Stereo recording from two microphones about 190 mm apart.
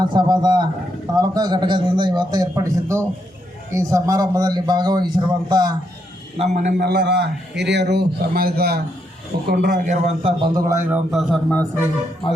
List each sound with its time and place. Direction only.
0.0 s a man's voice: 20° right (ahead or behind)
6.4 s a man's voice: 40° right (ahead or behind)
6.8 s a man's voice: 60° right (ahead or behind); by 10.3 s 40° right (ahead or behind)
10.4 s a man's voice: 20° right (ahead or behind); by 11.6 s centre (ahead or behind)